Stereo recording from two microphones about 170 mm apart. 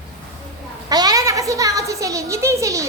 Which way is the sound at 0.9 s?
25° right (ahead or behind).